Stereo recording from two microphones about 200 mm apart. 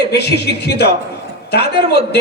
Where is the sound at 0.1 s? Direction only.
55° left (ahead or behind).